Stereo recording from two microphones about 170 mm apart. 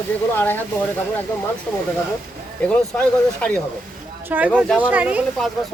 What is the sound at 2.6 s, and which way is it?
Speech, 5° left (ahead or behind).